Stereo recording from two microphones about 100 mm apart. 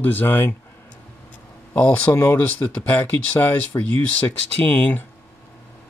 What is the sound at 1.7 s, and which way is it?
Speech, 10° left (ahead or behind).